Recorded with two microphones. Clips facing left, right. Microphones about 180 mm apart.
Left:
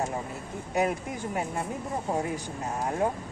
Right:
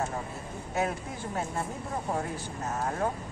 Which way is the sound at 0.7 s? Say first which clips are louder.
Left 4 dB; 15° left (ahead or behind).